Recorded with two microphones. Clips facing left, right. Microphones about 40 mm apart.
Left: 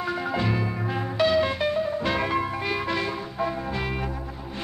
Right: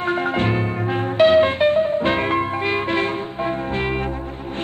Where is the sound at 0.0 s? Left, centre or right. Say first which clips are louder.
Right 6 dB; right.